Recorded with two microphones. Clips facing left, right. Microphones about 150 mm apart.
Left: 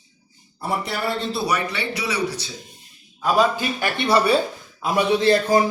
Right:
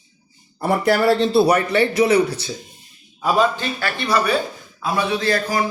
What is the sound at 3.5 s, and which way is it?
Speech, 20° left (ahead or behind).